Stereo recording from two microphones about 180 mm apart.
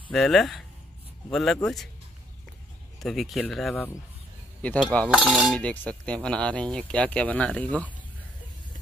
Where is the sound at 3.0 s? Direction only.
Centre (ahead or behind).